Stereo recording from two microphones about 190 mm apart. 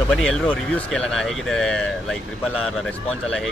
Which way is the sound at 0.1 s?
5° left (ahead or behind).